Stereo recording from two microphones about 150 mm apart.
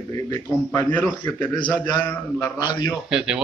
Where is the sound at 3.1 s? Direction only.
5° right (ahead or behind).